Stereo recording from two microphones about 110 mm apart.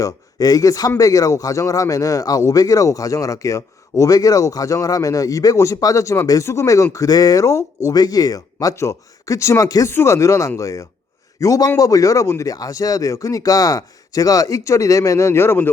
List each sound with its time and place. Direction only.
0.0 s a man's voice: 35° left (ahead or behind)